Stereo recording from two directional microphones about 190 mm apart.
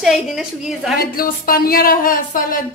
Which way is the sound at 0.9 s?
50° left (ahead or behind).